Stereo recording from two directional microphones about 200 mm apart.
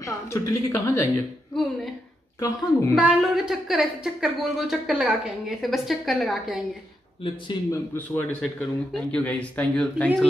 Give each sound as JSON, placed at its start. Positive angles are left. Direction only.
{"t": 0.0, "sound": "speech", "side_deg": 15}
{"t": 2.4, "sound": "speech", "side_deg": 15}
{"t": 3.0, "sound": "a woman's voice", "side_deg": 0}
{"t": 7.2, "sound": "speech", "side_deg": 25}
{"t": 7.9, "sound": "speech", "side_deg": 10}